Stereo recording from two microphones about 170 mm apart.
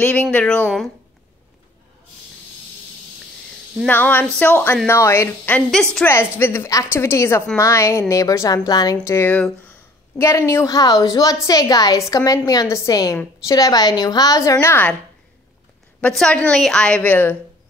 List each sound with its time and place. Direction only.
0.0 s a woman's voice: 10° left (ahead or behind)
3.8 s a woman's voice: 10° left (ahead or behind)
6.0 s a woman's voice: 15° left (ahead or behind)
16.0 s a woman's voice: 5° left (ahead or behind)